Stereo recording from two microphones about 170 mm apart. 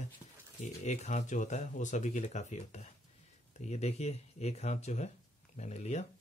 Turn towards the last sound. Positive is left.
turn(degrees=40)  # may be behind; listen again after turning